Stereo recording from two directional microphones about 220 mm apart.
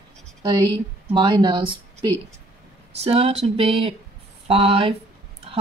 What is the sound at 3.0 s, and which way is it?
Speech, 30° right (ahead or behind).